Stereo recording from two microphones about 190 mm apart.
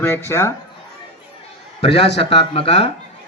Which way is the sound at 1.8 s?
30° left (ahead or behind).